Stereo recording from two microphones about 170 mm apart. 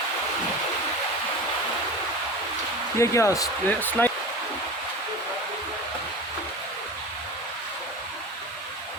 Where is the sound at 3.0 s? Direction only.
15° left (ahead or behind).